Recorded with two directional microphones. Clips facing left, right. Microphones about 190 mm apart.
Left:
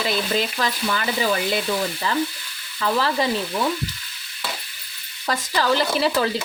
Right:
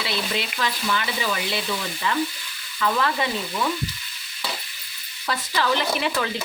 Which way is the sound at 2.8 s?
35° left (ahead or behind).